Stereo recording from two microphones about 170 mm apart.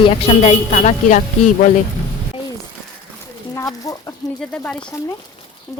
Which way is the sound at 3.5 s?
20° left (ahead or behind).